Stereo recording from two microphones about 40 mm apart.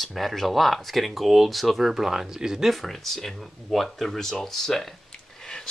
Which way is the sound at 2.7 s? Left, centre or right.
Centre.